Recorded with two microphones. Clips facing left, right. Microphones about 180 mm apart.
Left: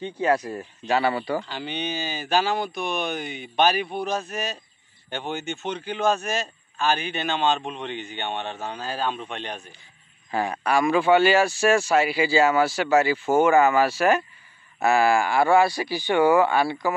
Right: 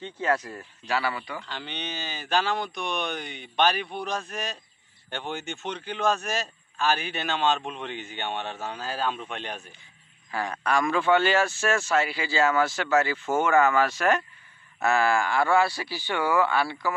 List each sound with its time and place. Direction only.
0.0 s speech: 15° left (ahead or behind); by 1.4 s 30° left (ahead or behind)
1.4 s speech: 5° left (ahead or behind)
10.3 s speech: 15° left (ahead or behind)